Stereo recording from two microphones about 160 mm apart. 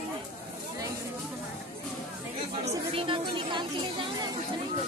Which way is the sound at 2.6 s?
35° right (ahead or behind).